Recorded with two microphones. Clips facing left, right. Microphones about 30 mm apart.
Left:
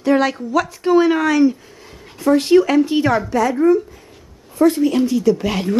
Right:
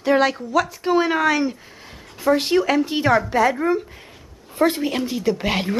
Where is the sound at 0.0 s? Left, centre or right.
Centre.